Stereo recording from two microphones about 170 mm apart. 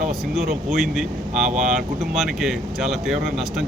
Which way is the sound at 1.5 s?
45° right (ahead or behind).